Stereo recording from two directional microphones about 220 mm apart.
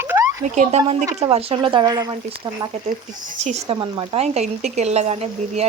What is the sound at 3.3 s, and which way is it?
Speech, 30° right (ahead or behind).